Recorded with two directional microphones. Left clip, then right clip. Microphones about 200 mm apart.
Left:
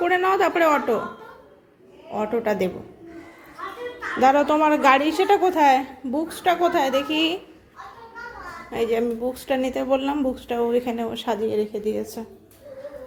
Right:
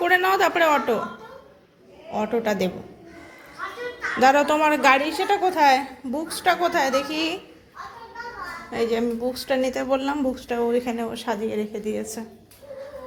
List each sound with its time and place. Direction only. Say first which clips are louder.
0.0 s speech: right 1 dB; 5° left (ahead or behind)
2.1 s speech: even; 10° left (ahead or behind)
4.2 s a child's voice: even; 10° left (ahead or behind)
8.7 s speech: left 1 dB; 15° left (ahead or behind)